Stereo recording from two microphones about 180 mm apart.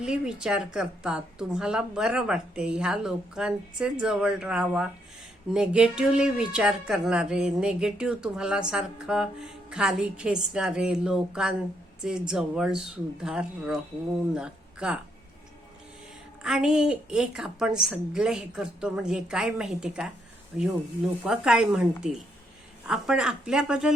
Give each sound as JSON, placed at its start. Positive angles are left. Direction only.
{"t": 0.0, "sound": "speech", "side_deg": -5}
{"t": 16.4, "sound": "speech", "side_deg": -5}